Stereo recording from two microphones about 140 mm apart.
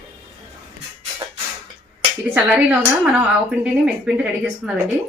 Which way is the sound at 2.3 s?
10° right (ahead or behind).